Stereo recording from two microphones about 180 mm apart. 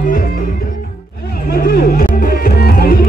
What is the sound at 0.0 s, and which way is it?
Music, 45° left (ahead or behind).